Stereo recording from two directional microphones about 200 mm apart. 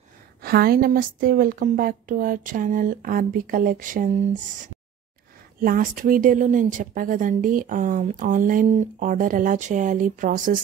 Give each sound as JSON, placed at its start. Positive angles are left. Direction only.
{"t": 0.4, "sound": "a woman's voice", "side_deg": -50}
{"t": 5.6, "sound": "speech", "side_deg": -45}